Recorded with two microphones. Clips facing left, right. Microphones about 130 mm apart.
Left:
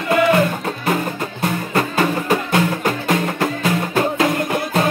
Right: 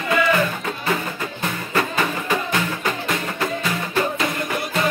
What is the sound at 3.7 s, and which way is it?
Music, 50° left (ahead or behind).